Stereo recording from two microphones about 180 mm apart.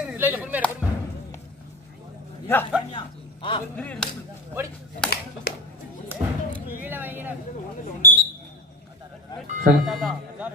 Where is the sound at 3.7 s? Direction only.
5° left (ahead or behind).